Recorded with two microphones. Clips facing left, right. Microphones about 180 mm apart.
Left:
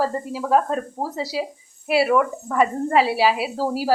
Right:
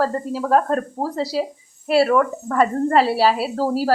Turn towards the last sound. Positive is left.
turn(degrees=5)  # may be behind; listen again after turning